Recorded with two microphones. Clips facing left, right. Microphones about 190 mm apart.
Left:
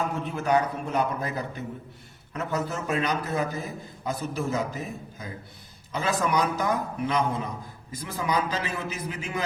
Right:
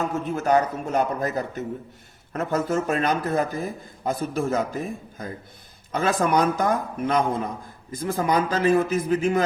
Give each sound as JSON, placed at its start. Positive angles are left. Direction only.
{"t": 0.3, "sound": "a man's voice", "side_deg": -45}